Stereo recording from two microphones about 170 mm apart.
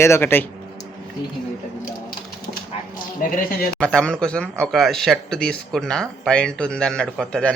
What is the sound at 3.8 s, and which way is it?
Speech, 5° left (ahead or behind).